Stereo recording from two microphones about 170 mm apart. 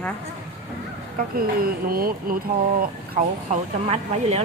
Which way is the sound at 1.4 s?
60° right (ahead or behind).